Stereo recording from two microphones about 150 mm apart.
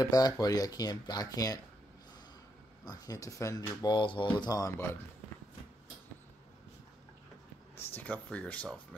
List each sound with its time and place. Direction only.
0.0 s speech: 25° left (ahead or behind)
2.8 s speech: 25° left (ahead or behind)
7.8 s speech: 10° left (ahead or behind)